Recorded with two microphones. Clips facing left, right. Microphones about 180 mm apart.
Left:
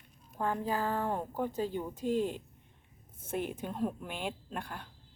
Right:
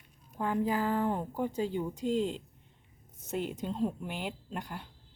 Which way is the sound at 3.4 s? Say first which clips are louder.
Right 2 dB; 15° right (ahead or behind).